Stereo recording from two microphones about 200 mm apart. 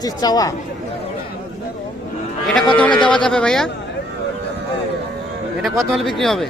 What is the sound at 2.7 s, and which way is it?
Speech, 5° left (ahead or behind).